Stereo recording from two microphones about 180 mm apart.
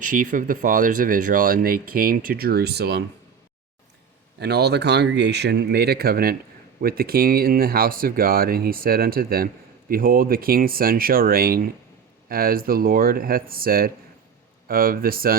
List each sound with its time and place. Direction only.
0.0 s speech: 50° right (ahead or behind); by 3.0 s 65° right (ahead or behind)
4.4 s speech: 65° right (ahead or behind)